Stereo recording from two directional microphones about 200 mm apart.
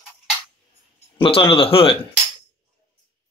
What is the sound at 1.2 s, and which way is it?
Speech, 25° left (ahead or behind).